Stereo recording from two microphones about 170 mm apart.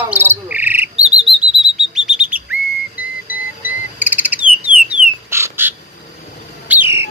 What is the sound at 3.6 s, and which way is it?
Bird, 10° right (ahead or behind).